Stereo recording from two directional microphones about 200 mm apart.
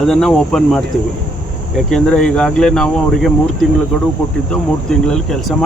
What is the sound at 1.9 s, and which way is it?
Speech, 5° left (ahead or behind).